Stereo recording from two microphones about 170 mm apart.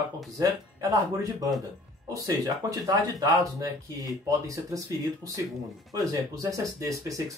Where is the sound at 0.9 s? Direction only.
20° right (ahead or behind).